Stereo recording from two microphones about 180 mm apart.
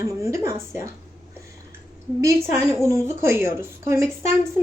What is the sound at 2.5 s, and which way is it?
A woman's voice, 15° right (ahead or behind).